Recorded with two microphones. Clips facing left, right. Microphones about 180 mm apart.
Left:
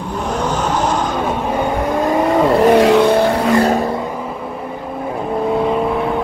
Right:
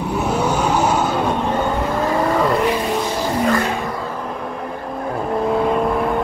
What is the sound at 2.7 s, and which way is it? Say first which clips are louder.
Vehicle: left 10 dB; 75° left (ahead or behind).